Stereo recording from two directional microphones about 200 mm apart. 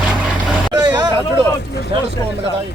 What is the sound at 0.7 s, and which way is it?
Vehicle, 20° right (ahead or behind).